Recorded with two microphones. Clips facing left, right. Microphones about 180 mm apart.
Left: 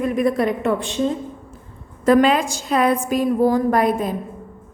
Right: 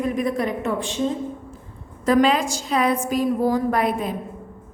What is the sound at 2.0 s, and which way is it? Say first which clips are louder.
A woman's voice: left 3 dB; 55° left (ahead or behind).